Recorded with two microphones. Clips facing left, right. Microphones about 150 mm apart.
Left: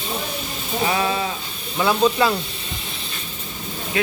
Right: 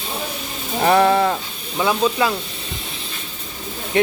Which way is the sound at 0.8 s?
55° right (ahead or behind).